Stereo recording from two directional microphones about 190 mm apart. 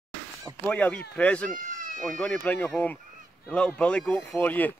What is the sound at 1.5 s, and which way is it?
Cat, 45° right (ahead or behind).